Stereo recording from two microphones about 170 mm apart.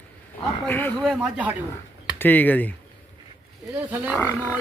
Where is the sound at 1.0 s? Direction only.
5° right (ahead or behind).